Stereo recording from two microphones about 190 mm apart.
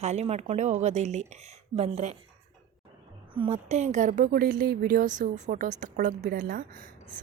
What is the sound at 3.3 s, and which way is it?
A woman's voice, 30° right (ahead or behind).